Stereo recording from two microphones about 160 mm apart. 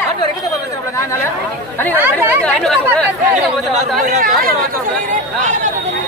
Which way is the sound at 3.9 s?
65° right (ahead or behind).